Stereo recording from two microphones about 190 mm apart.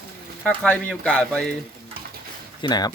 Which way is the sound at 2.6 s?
20° left (ahead or behind).